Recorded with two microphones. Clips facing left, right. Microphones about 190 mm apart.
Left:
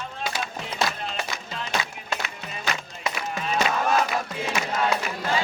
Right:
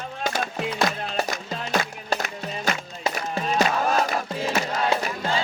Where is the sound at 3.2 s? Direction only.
40° right (ahead or behind).